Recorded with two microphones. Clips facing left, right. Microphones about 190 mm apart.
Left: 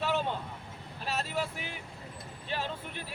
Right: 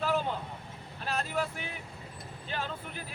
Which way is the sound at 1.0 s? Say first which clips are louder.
Right 1 dB; 5° left (ahead or behind).